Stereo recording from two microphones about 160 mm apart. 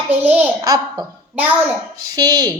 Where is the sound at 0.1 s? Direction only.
10° right (ahead or behind).